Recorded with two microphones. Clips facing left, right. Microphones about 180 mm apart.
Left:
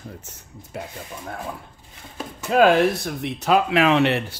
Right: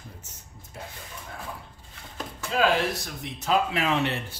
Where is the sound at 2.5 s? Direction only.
55° left (ahead or behind); by 4.3 s 75° left (ahead or behind).